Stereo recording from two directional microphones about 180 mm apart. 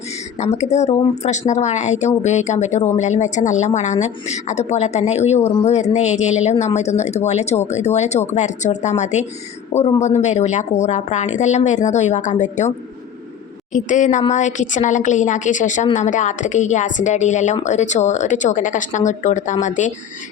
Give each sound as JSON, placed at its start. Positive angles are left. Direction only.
{"t": 0.3, "sound": "speech", "side_deg": 40}
{"t": 13.7, "sound": "speech", "side_deg": 40}